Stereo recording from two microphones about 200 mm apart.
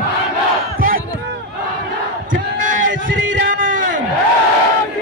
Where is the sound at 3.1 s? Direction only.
65° right (ahead or behind).